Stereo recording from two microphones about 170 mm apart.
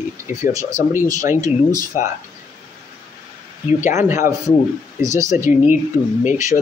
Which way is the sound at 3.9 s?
15° right (ahead or behind).